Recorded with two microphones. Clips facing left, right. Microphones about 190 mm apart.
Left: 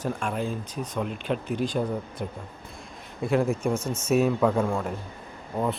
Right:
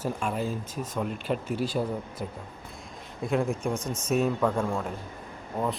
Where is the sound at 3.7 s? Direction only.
15° right (ahead or behind).